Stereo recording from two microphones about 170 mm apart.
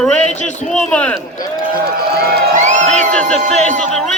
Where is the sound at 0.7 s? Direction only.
5° left (ahead or behind).